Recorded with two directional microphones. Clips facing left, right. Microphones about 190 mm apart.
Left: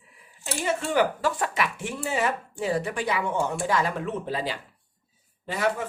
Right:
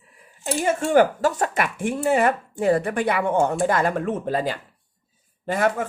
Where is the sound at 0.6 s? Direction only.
50° right (ahead or behind).